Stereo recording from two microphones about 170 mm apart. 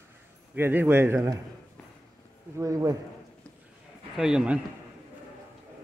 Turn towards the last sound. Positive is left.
turn(degrees=-5)  # may be behind; listen again after turning